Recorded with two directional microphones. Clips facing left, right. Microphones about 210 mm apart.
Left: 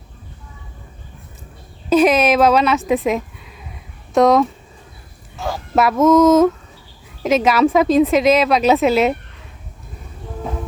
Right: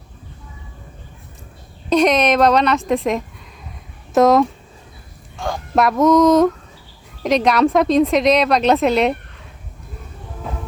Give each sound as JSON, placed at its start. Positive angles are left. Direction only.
{"t": 1.9, "sound": "a woman's voice", "side_deg": 5}